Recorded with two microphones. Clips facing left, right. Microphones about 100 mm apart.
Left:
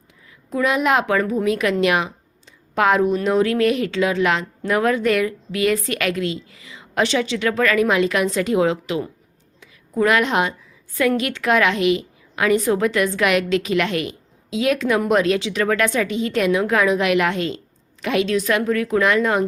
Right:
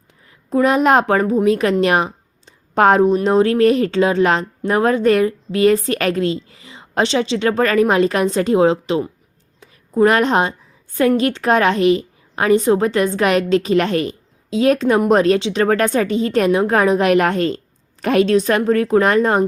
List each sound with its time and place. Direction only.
0.3 s a woman's voice: 40° right (ahead or behind)
9.6 s a sound: 35° right (ahead or behind)
11.2 s a woman's voice: 35° right (ahead or behind)
15.4 s speech: 25° right (ahead or behind)
15.6 s a woman's voice: 40° right (ahead or behind)